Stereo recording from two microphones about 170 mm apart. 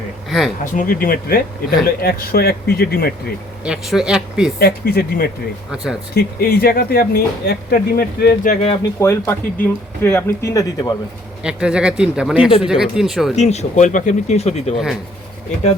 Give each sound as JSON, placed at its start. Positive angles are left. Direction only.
{"t": 0.3, "sound": "speech", "side_deg": 0}
{"t": 0.6, "sound": "speech", "side_deg": 55}
{"t": 3.6, "sound": "speech", "side_deg": -5}
{"t": 4.6, "sound": "speech", "side_deg": 60}
{"t": 5.7, "sound": "speech", "side_deg": -5}
{"t": 6.1, "sound": "speech", "side_deg": 60}
{"t": 8.4, "sound": "speech", "side_deg": 35}
{"t": 9.0, "sound": "speech", "side_deg": 15}
{"t": 11.4, "sound": "speech", "side_deg": -5}
{"t": 13.3, "sound": "speech", "side_deg": 40}